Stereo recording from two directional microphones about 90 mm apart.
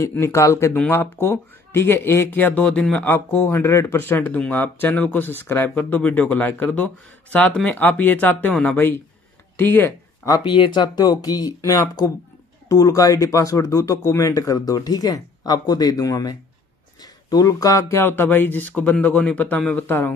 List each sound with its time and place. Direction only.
0.1 s speech: 30° left (ahead or behind)
2.3 s speech: 20° left (ahead or behind)
3.1 s speech: 25° left (ahead or behind)
10.4 s speech: 60° left (ahead or behind); by 20.2 s 25° left (ahead or behind)